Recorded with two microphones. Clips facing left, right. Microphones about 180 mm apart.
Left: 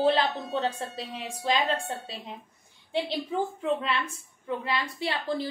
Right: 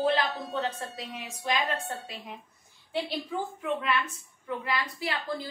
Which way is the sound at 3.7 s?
30° left (ahead or behind).